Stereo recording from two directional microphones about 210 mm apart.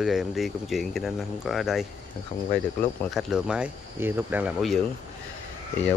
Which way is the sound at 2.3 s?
30° left (ahead or behind).